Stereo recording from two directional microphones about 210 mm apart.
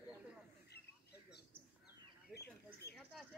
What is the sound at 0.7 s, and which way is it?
Bird, 50° left (ahead or behind).